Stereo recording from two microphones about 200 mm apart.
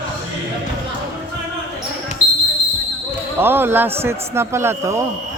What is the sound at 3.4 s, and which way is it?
A man's voice, 10° right (ahead or behind).